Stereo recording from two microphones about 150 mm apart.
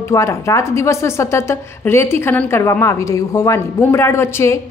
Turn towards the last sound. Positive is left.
turn(degrees=20)  # may be behind; listen again after turning